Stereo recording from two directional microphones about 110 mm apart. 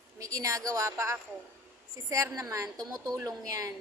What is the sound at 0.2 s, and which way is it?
A woman's voice, 30° right (ahead or behind).